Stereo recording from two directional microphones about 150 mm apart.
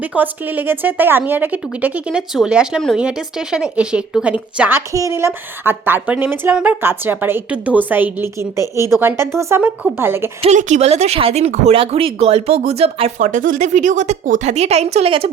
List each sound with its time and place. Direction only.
0.0 s a woman's voice: 10° right (ahead or behind)
4.9 s a woman's voice: 20° right (ahead or behind)
10.4 s speech: 50° right (ahead or behind)
13.2 s speech: 60° right (ahead or behind); by 15.3 s 40° right (ahead or behind)